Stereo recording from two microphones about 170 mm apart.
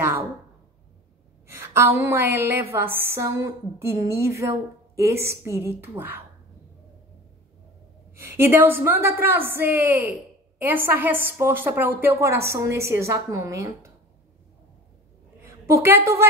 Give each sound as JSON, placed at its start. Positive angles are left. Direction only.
{"t": 1.5, "sound": "a woman's voice", "side_deg": -15}
{"t": 8.2, "sound": "a woman's voice", "side_deg": -15}
{"t": 15.4, "sound": "a woman's voice", "side_deg": -15}